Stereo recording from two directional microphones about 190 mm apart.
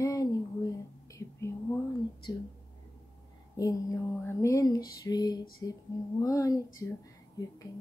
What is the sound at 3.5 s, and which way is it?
Speech, 20° left (ahead or behind).